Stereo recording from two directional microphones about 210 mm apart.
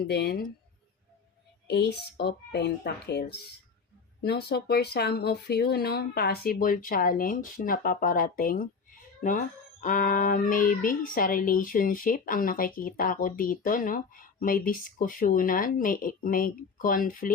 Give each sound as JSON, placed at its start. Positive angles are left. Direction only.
{"t": 0.1, "sound": "speech", "side_deg": 50}
{"t": 1.6, "sound": "speech", "side_deg": 55}
{"t": 9.8, "sound": "speech", "side_deg": 40}